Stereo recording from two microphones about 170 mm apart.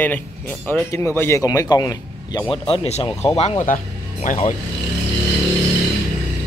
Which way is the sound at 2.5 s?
35° left (ahead or behind).